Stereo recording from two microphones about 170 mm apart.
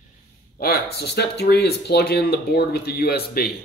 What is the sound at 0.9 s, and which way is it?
Speech, 75° left (ahead or behind).